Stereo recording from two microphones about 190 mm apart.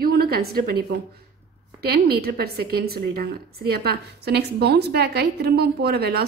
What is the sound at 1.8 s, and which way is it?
A woman's voice, 55° right (ahead or behind).